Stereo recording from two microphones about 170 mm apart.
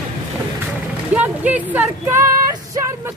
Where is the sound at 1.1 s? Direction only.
10° right (ahead or behind).